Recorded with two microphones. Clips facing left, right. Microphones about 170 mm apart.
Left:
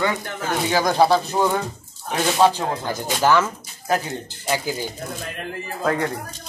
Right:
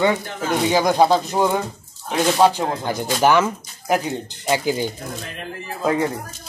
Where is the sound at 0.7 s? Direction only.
15° right (ahead or behind).